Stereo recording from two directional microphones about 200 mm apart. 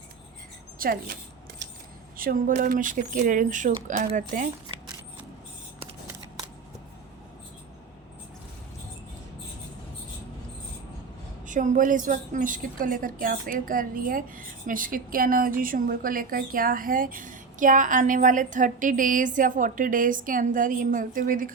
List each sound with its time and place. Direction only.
0.8 s a woman's voice: 45° right (ahead or behind)
2.1 s speech: 45° right (ahead or behind)
11.4 s a woman's voice: 40° right (ahead or behind)